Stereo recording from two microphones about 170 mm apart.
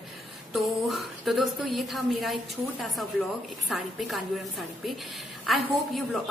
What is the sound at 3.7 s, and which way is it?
Speech, centre (ahead or behind).